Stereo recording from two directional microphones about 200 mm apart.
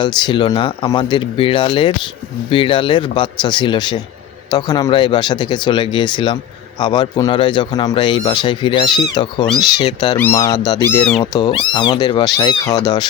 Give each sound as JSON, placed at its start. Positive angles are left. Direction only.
{"t": 0.0, "sound": "speech", "side_deg": 20}